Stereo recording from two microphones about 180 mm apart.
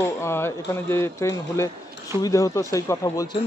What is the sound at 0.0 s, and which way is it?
Speech, 15° left (ahead or behind).